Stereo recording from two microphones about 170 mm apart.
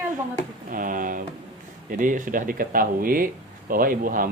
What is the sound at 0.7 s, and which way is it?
Speech, 55° right (ahead or behind).